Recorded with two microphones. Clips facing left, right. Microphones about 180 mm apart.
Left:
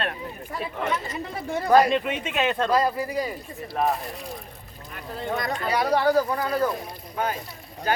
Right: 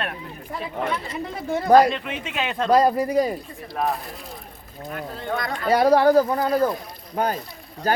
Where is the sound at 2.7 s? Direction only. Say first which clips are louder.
Right 5 dB; 45° right (ahead or behind).